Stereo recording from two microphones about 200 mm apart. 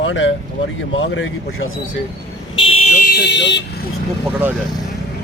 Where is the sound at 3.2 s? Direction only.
60° left (ahead or behind).